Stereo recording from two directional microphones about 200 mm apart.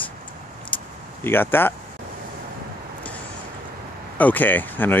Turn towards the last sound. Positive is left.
turn(degrees=10)  # may be behind; listen again after turning